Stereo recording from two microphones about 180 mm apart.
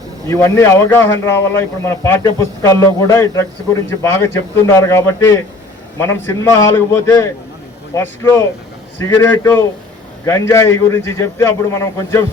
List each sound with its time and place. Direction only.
0.3 s a man's voice: 15° left (ahead or behind)